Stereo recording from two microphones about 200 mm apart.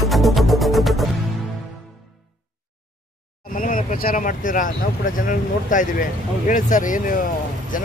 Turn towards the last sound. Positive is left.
turn(degrees=45)  # may be behind; listen again after turning